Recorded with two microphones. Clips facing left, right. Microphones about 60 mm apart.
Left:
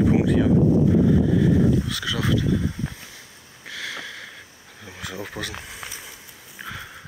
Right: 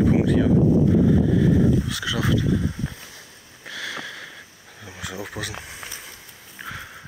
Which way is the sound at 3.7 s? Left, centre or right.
Right.